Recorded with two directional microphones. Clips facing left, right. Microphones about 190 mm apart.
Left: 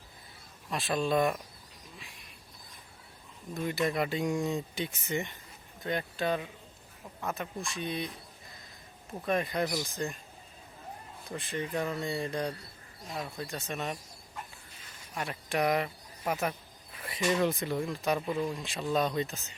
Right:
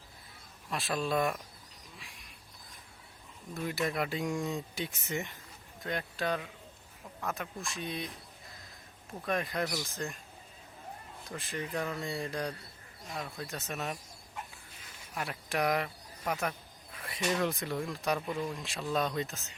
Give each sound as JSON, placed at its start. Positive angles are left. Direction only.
{"t": 0.7, "sound": "speech", "side_deg": 0}
{"t": 3.5, "sound": "speech", "side_deg": 0}
{"t": 9.2, "sound": "speech", "side_deg": 0}
{"t": 9.7, "sound": "speech", "side_deg": 15}
{"t": 11.3, "sound": "speech", "side_deg": 0}
{"t": 15.1, "sound": "speech", "side_deg": 0}